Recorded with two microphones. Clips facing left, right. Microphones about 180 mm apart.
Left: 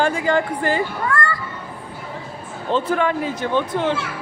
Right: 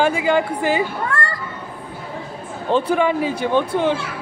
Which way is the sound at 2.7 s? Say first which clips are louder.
Right 2 dB; 15° right (ahead or behind).